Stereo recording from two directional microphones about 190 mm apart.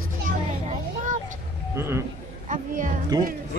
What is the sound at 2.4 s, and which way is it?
Speech, 40° right (ahead or behind).